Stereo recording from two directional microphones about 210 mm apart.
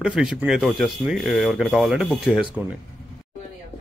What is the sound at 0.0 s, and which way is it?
Speech, 5° right (ahead or behind).